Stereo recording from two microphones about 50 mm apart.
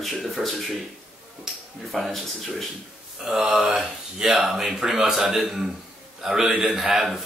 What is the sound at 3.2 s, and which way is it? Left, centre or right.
A man's voice, centre.